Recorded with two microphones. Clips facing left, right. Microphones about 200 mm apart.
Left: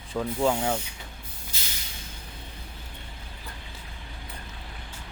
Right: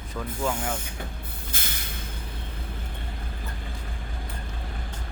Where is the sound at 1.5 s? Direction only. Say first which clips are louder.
Right 7 dB; 55° right (ahead or behind).